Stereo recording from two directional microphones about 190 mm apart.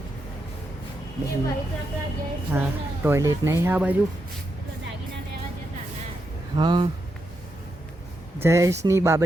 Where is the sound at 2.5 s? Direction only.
10° right (ahead or behind).